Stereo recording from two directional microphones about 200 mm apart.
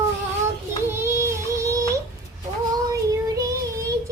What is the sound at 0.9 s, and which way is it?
Music, 10° right (ahead or behind).